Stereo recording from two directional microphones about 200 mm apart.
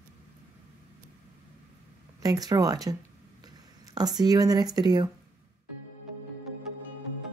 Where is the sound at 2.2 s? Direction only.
20° right (ahead or behind).